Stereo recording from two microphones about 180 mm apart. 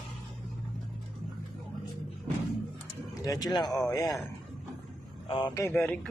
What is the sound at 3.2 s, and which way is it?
Speech, 20° left (ahead or behind).